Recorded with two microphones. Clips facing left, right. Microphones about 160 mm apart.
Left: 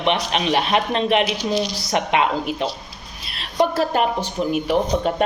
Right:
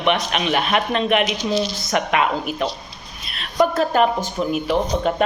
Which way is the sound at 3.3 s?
30° left (ahead or behind).